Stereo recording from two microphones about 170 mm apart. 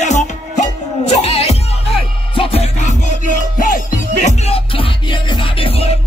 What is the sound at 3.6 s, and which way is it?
Music, 55° left (ahead or behind).